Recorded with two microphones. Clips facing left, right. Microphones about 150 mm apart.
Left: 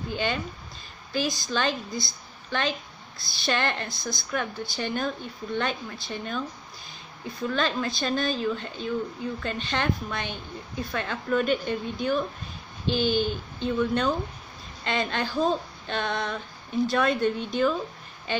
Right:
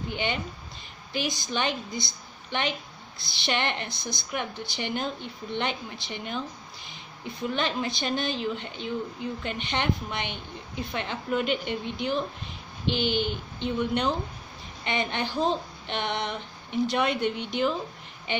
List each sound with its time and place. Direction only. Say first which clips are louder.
0.1 s a woman's voice: left 3 dB; 20° right (ahead or behind)
7.4 s a woman's voice: left 2 dB; 20° right (ahead or behind)